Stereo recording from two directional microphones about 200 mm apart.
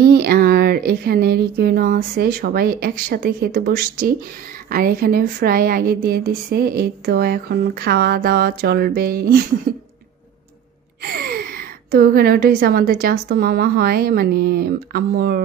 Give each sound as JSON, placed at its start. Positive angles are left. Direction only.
{"t": 0.0, "sound": "speech", "side_deg": -50}
{"t": 11.0, "sound": "speech", "side_deg": -50}